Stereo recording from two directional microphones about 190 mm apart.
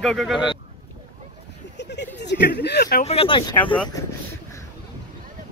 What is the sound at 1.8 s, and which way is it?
Speech, 65° left (ahead or behind).